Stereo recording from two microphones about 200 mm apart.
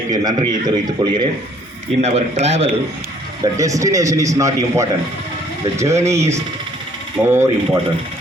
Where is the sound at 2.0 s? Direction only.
35° right (ahead or behind).